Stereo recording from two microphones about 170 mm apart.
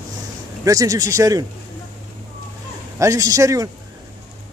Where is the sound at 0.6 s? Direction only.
20° right (ahead or behind).